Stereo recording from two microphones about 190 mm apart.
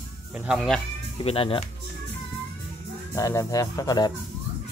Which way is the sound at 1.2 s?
30° left (ahead or behind).